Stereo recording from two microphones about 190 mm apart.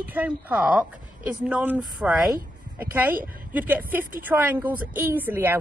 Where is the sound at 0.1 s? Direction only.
10° right (ahead or behind).